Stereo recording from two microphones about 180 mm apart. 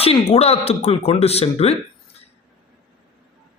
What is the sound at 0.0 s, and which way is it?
A man's voice, 35° left (ahead or behind).